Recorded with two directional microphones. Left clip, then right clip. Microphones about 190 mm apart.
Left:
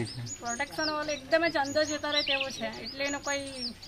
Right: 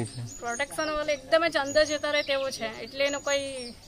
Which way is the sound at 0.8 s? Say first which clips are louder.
Right 4 dB; 25° right (ahead or behind).